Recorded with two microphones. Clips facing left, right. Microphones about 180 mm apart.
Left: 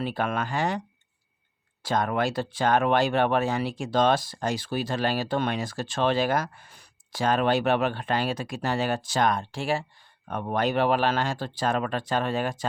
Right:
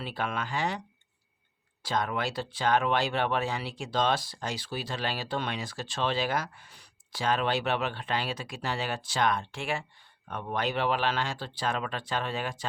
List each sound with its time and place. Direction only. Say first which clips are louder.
0.0 s speech: left 6 dB; 50° left (ahead or behind)
1.8 s speech: left 5 dB; 50° left (ahead or behind)
10.2 s speech: left 5 dB; 45° left (ahead or behind)